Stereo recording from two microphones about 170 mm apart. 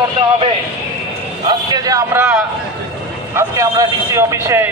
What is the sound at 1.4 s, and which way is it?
Speech, 25° right (ahead or behind).